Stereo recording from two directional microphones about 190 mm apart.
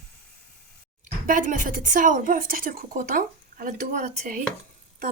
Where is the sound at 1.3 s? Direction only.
45° right (ahead or behind).